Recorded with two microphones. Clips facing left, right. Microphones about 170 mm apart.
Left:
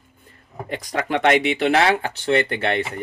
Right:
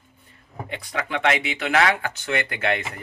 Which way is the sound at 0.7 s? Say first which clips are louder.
Left 5 dB; 40° left (ahead or behind).